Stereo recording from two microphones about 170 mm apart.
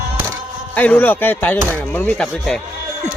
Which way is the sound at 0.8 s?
10° left (ahead or behind).